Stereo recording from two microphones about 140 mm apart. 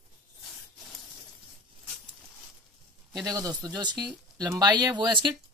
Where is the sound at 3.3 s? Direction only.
25° right (ahead or behind).